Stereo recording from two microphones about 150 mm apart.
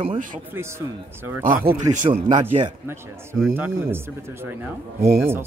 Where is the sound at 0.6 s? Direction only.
15° right (ahead or behind).